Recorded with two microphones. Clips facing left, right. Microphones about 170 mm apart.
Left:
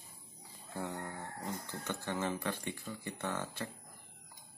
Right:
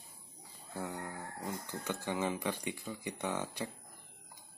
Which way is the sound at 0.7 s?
5° right (ahead or behind).